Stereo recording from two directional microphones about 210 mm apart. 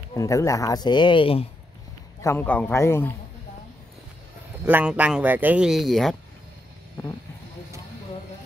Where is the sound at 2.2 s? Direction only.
10° left (ahead or behind).